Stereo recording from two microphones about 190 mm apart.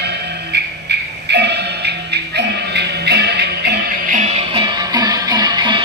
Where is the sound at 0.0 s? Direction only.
60° right (ahead or behind).